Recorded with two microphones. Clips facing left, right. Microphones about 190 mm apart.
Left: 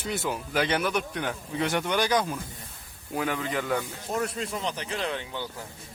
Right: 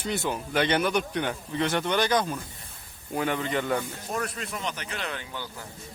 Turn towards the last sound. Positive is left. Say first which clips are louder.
# left 4 dB
turn(degrees=25)  # may be behind; listen again after turning